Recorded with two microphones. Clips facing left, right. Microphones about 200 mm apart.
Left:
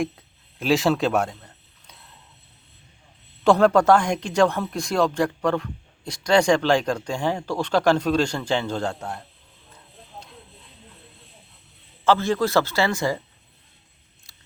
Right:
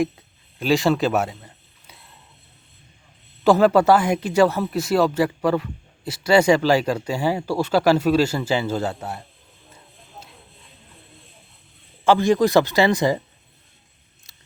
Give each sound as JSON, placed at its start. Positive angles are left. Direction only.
{"t": 0.0, "sound": "a sound", "side_deg": 0}
{"t": 3.4, "sound": "speech", "side_deg": -5}
{"t": 12.0, "sound": "speech", "side_deg": -15}